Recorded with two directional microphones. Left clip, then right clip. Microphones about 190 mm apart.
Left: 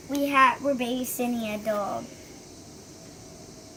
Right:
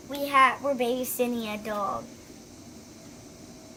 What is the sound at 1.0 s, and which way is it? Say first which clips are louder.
Speech: right 1 dB; 35° right (ahead or behind).